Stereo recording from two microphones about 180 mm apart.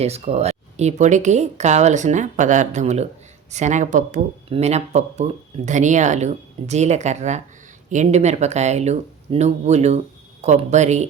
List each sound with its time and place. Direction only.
0.0 s speech: 35° right (ahead or behind)